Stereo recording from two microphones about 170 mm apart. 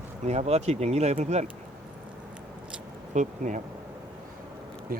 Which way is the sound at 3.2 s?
45° right (ahead or behind).